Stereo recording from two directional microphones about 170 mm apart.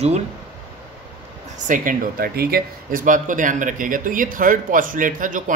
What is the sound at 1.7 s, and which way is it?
Speech, 55° right (ahead or behind).